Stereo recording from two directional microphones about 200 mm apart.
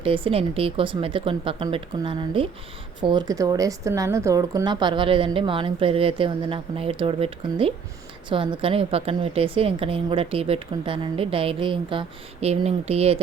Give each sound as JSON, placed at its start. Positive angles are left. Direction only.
{"t": 0.0, "sound": "a woman's voice", "side_deg": -25}